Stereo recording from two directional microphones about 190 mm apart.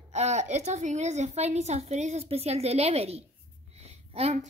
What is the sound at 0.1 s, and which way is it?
A woman's voice, 35° right (ahead or behind).